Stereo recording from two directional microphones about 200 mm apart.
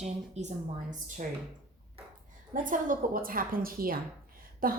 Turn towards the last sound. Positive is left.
turn(degrees=-45)  # may be behind; listen again after turning